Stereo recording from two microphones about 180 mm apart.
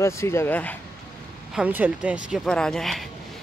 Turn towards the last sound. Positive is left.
turn(degrees=0)  # may be behind; listen again after turning